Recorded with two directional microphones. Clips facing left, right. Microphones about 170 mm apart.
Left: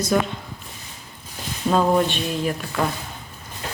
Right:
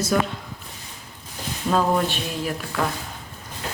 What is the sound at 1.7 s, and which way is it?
Speech, centre (ahead or behind).